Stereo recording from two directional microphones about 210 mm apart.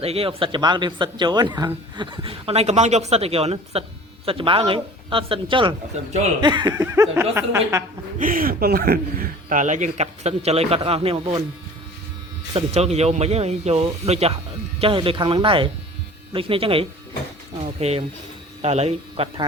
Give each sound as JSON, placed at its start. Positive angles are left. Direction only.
{"t": 0.0, "sound": "speech", "side_deg": -30}
{"t": 8.2, "sound": "a man's voice", "side_deg": -40}
{"t": 12.5, "sound": "a man's voice", "side_deg": -30}